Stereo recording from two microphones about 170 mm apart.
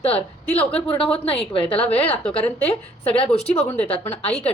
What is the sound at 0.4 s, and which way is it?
Speech, 10° left (ahead or behind).